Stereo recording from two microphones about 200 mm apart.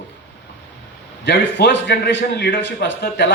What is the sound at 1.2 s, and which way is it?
A man's voice, 60° left (ahead or behind).